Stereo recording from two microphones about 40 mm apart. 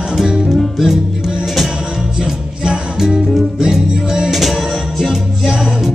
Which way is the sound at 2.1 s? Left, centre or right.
Centre.